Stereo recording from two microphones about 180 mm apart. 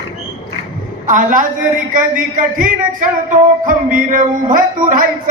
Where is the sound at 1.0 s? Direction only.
45° right (ahead or behind).